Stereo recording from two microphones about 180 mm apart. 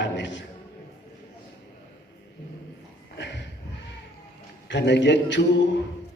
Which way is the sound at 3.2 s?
75° left (ahead or behind).